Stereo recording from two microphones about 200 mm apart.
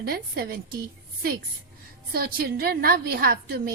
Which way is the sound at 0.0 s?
50° right (ahead or behind).